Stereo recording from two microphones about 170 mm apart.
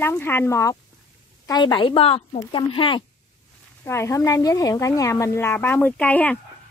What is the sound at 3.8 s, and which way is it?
A woman's voice, 15° left (ahead or behind).